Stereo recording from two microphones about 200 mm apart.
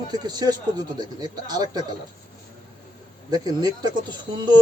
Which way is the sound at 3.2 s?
20° right (ahead or behind).